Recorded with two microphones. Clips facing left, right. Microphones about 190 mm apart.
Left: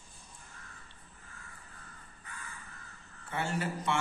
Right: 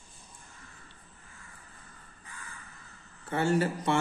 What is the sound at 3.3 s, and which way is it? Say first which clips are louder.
Mantra: right 8 dB; 40° right (ahead or behind).